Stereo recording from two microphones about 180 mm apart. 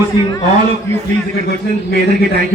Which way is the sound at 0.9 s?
15° left (ahead or behind).